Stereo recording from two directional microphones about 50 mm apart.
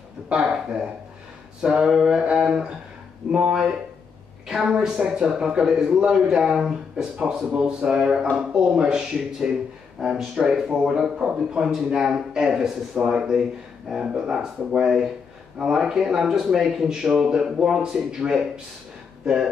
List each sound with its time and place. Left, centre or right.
0.3 s speech: centre
4.5 s speech: centre
6.1 s speech: centre